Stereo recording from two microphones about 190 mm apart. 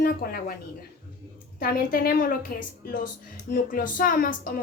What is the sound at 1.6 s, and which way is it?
Speech, 50° left (ahead or behind).